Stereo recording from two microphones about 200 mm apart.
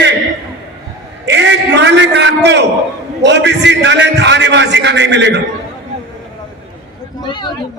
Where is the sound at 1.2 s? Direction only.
60° right (ahead or behind).